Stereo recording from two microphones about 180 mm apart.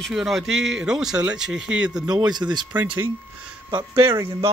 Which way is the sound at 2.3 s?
25° right (ahead or behind).